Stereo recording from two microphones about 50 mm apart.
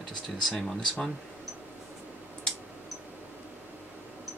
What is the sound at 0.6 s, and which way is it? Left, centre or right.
Speech, centre.